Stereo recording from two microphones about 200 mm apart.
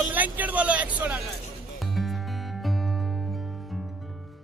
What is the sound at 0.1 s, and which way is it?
Vehicle, 10° right (ahead or behind).